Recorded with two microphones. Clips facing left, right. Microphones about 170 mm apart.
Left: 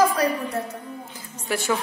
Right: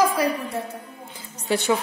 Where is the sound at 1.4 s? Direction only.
20° right (ahead or behind).